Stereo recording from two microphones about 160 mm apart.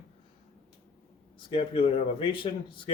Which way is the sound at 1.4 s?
35° left (ahead or behind).